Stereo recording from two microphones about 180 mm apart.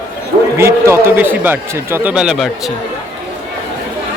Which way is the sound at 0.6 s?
15° right (ahead or behind).